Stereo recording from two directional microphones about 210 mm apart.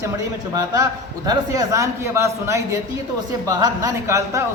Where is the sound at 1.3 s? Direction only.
15° right (ahead or behind).